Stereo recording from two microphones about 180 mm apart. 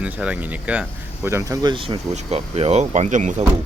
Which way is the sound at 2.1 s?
35° right (ahead or behind).